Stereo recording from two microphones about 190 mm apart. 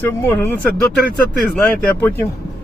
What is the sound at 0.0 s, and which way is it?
Speech, 10° left (ahead or behind).